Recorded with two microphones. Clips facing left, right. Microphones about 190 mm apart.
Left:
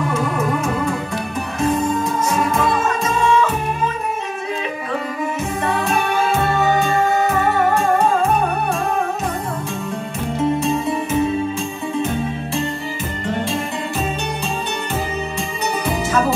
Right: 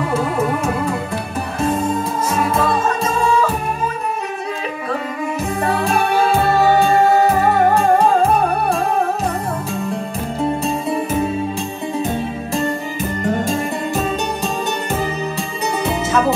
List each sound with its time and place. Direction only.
1.6 s music: 30° right (ahead or behind)
5.6 s music: 35° right (ahead or behind)
10.6 s music: 35° right (ahead or behind)
13.2 s music: 45° right (ahead or behind)
15.8 s music: 20° right (ahead or behind)